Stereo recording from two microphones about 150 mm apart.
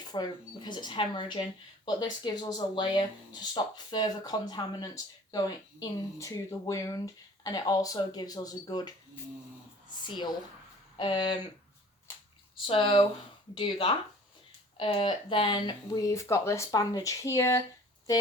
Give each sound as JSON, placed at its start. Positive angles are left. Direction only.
{"t": 0.0, "sound": "speech", "side_deg": 30}
{"t": 10.0, "sound": "speech", "side_deg": 30}
{"t": 12.6, "sound": "speech", "side_deg": 35}